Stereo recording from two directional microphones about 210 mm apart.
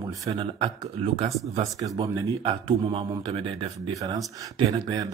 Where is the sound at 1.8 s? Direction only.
15° right (ahead or behind).